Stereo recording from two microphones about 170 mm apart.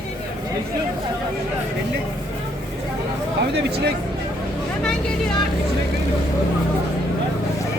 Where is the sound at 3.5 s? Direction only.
75° right (ahead or behind).